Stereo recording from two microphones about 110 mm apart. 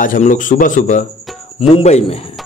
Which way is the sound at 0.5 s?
90° left.